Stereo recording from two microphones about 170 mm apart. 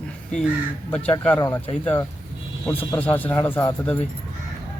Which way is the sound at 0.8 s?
10° left (ahead or behind).